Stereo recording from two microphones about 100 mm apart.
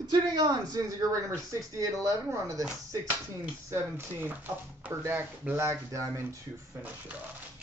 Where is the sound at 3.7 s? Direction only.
25° right (ahead or behind).